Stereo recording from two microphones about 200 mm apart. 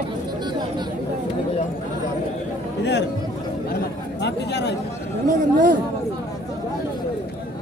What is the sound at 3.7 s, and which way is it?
Chatter, 55° left (ahead or behind).